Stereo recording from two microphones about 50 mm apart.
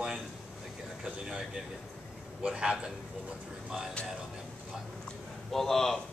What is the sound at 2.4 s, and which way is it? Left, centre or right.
Speech, centre.